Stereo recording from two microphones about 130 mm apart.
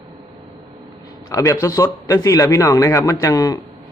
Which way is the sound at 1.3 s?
25° left (ahead or behind).